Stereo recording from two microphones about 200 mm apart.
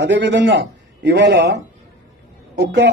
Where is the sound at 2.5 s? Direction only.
60° right (ahead or behind).